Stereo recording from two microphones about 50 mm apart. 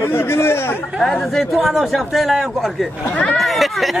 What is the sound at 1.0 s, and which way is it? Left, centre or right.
Speech, centre.